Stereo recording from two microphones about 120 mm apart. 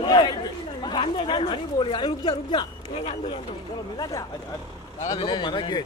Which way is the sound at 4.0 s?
30° left (ahead or behind).